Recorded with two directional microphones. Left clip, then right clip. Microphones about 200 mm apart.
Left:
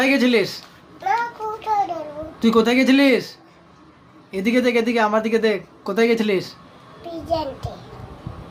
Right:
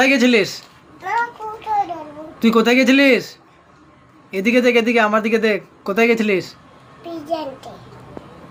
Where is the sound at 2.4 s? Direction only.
15° right (ahead or behind).